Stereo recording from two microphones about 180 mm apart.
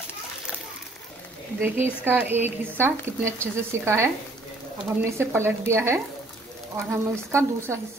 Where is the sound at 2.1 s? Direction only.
10° right (ahead or behind).